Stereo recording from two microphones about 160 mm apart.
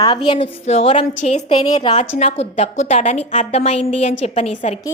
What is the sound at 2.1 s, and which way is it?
A woman's voice, 40° left (ahead or behind).